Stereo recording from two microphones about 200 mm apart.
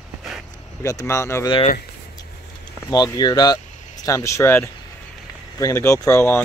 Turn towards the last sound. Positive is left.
turn(degrees=15)  # may be behind; listen again after turning